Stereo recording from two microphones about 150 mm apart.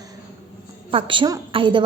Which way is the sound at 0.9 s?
35° right (ahead or behind).